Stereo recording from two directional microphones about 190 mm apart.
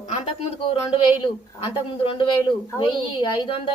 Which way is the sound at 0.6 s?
30° left (ahead or behind).